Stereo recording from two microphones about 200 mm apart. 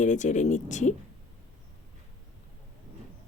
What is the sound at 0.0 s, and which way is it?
Speech, 35° left (ahead or behind).